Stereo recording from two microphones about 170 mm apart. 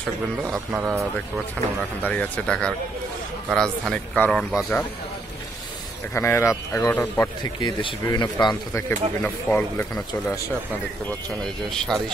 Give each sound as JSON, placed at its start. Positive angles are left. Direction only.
{"t": 0.4, "sound": "a man's voice", "side_deg": -5}
{"t": 2.0, "sound": "speech", "side_deg": 10}
{"t": 6.1, "sound": "speech", "side_deg": 15}
{"t": 8.7, "sound": "speech", "side_deg": 15}